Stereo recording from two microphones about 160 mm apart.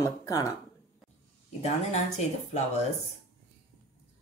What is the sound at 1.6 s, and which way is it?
Speech, 45° left (ahead or behind).